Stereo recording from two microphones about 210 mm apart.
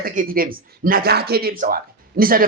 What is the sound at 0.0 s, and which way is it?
A man's voice, 40° right (ahead or behind).